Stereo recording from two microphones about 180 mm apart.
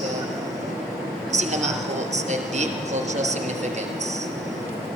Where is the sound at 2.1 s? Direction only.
40° right (ahead or behind).